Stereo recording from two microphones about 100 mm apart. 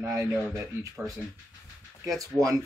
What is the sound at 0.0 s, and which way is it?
Speech, 25° right (ahead or behind).